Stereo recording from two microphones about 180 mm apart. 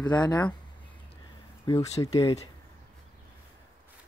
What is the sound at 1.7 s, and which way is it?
Speech, 20° left (ahead or behind).